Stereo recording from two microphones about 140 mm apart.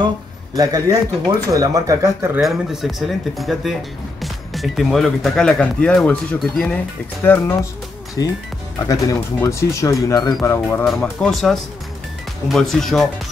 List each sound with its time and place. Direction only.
0.6 s speech: 25° right (ahead or behind)
2.4 s speech: centre (ahead or behind)
8.8 s speech: 25° left (ahead or behind)
10.8 s speech: 5° left (ahead or behind)